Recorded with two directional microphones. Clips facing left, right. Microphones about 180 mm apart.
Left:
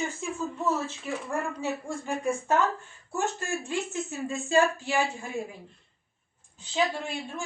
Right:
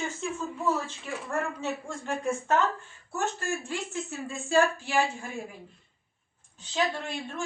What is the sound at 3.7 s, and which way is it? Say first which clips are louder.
Speech: left 3 dB; 20° left (ahead or behind).